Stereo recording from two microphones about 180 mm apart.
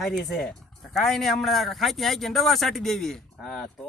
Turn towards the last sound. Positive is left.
turn(degrees=0)  # may be behind; listen again after turning